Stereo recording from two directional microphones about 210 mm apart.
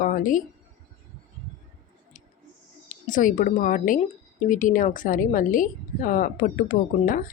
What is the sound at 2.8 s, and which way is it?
A woman's voice, 40° left (ahead or behind).